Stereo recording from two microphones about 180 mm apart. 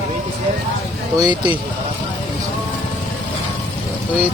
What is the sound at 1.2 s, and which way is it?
Speech, 25° right (ahead or behind).